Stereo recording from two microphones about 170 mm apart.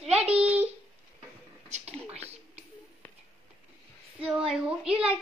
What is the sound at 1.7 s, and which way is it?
Speech, 40° right (ahead or behind).